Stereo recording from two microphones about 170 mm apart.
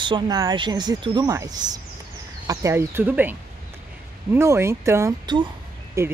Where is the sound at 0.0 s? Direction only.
25° right (ahead or behind).